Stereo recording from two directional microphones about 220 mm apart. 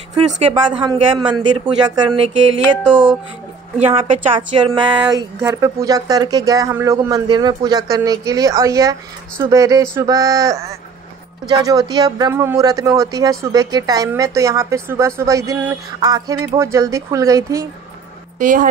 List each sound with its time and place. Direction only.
0.4 s speech: 20° right (ahead or behind)
2.8 s speech: 5° right (ahead or behind)
4.0 s speech: 25° right (ahead or behind)
18.4 s a woman's voice: 35° right (ahead or behind)